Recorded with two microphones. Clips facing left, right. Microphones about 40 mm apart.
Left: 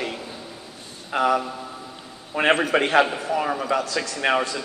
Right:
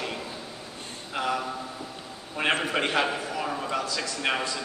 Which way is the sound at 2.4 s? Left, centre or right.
Left.